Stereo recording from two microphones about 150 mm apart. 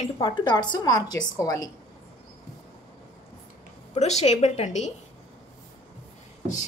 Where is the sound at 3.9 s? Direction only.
50° left (ahead or behind).